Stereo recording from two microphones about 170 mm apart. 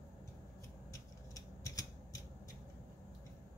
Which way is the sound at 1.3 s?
20° left (ahead or behind).